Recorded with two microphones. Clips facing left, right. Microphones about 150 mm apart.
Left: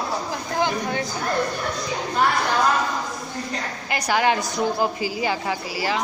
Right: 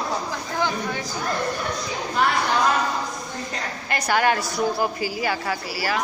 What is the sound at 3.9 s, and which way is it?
A woman's voice, 15° left (ahead or behind).